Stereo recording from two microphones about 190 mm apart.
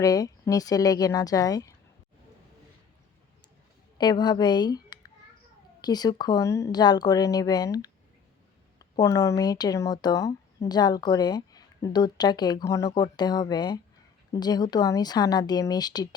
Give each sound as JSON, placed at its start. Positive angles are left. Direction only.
{"t": 0.0, "sound": "speech", "side_deg": 20}
{"t": 3.9, "sound": "speech", "side_deg": 20}
{"t": 9.0, "sound": "speech", "side_deg": 15}